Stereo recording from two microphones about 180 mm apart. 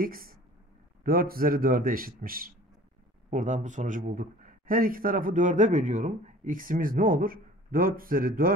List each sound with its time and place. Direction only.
0.0 s speech: 55° right (ahead or behind)
3.3 s speech: 45° right (ahead or behind)